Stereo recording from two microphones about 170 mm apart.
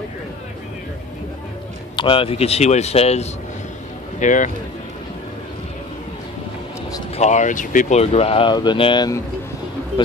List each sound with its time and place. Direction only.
2.0 s speech: 30° left (ahead or behind); by 4.5 s 45° left (ahead or behind)
7.2 s speech: 45° left (ahead or behind); by 9.2 s 25° left (ahead or behind)